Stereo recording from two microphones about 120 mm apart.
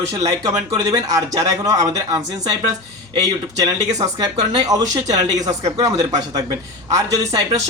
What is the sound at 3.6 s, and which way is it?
A man's voice, 30° right (ahead or behind).